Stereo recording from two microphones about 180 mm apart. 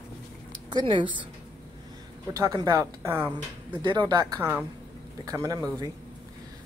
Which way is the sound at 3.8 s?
25° right (ahead or behind).